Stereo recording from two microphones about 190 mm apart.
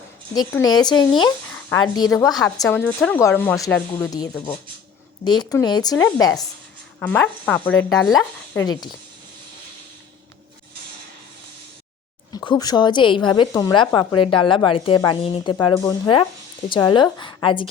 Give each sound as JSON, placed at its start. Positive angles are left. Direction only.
{"t": 0.3, "sound": "a woman's voice", "side_deg": 20}
{"t": 8.1, "sound": "a woman's voice", "side_deg": 20}
{"t": 12.5, "sound": "a woman's voice", "side_deg": 20}